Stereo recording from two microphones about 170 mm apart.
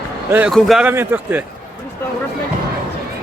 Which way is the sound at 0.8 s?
10° right (ahead or behind).